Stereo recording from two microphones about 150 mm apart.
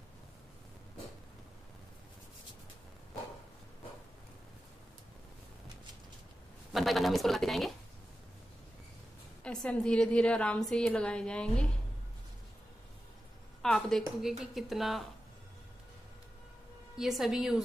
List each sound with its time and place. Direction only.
6.7 s speech: centre (ahead or behind)
9.4 s a woman's voice: 5° left (ahead or behind)
13.6 s a woman's voice: 5° left (ahead or behind)
16.9 s a woman's voice: centre (ahead or behind)